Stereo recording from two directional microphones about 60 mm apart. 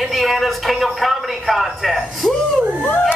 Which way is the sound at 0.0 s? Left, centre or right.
Centre.